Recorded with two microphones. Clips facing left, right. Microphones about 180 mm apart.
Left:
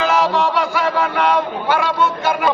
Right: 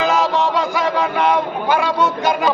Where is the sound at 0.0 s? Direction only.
20° right (ahead or behind).